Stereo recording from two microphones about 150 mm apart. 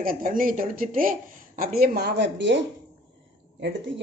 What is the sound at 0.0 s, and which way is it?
Speech, 70° right (ahead or behind).